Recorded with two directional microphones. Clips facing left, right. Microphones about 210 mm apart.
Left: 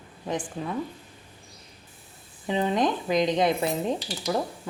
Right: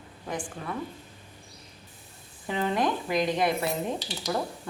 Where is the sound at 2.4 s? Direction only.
20° left (ahead or behind).